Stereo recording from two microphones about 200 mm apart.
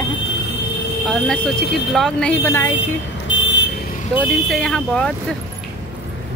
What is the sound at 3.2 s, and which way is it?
Vehicle, 65° left (ahead or behind).